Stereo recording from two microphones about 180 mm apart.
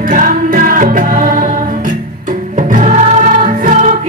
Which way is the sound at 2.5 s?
40° right (ahead or behind).